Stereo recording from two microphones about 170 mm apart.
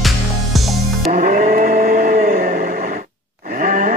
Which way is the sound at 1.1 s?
55° right (ahead or behind).